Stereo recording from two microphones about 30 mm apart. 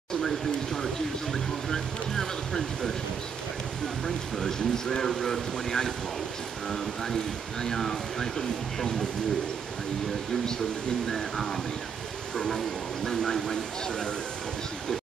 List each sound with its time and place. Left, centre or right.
1.3 s speech: centre
4.0 s speech: centre
7.7 s speech: centre
11.1 s speech: centre
13.1 s speech: centre